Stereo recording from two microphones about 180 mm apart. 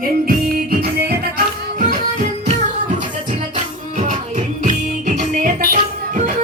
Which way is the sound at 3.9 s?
45° right (ahead or behind).